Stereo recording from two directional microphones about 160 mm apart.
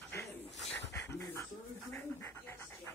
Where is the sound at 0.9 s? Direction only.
20° left (ahead or behind).